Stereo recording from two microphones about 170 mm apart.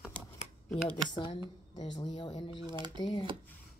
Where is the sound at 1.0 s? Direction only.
25° left (ahead or behind).